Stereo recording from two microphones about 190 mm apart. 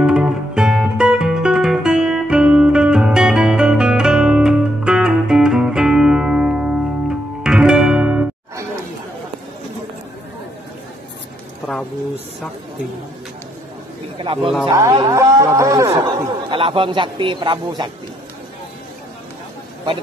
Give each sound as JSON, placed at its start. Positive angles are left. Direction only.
{"t": 0.0, "sound": "guitar", "side_deg": -5}
{"t": 14.1, "sound": "a sound", "side_deg": -30}
{"t": 14.7, "sound": "music", "side_deg": -20}
{"t": 16.4, "sound": "a man's voice", "side_deg": -25}